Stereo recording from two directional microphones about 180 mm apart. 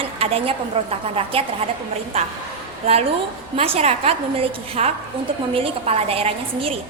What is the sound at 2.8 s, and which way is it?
A woman's voice, 35° right (ahead or behind).